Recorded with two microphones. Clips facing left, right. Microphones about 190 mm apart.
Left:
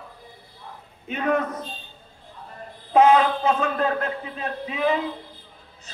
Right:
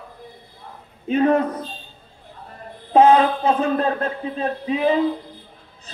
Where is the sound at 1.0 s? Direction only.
35° right (ahead or behind).